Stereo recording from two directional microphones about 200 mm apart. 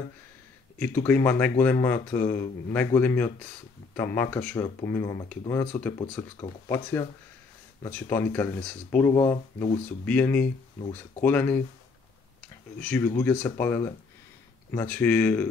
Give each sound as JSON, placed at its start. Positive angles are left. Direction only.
{"t": 0.7, "sound": "speech", "side_deg": 10}
{"t": 5.7, "sound": "speech", "side_deg": 5}
{"t": 12.7, "sound": "speech", "side_deg": 10}